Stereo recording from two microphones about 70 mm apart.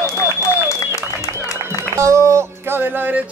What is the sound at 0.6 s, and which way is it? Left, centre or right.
Applause, left.